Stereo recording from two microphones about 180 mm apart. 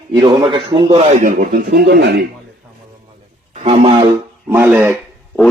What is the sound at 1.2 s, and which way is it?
Speech, 55° right (ahead or behind).